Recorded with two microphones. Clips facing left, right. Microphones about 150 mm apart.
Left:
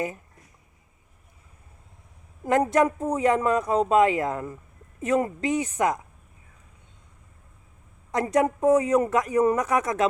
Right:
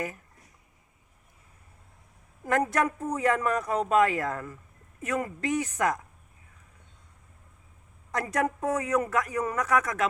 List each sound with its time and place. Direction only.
2.5 s speech: 20° left (ahead or behind)
8.1 s speech: 20° left (ahead or behind)